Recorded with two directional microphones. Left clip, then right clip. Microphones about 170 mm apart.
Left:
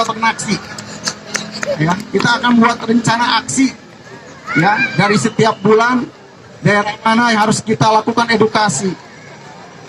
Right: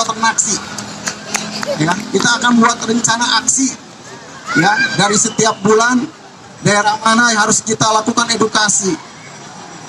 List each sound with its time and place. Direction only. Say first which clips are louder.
0.0 s a man's voice: right 1 dB; 40° left (ahead or behind)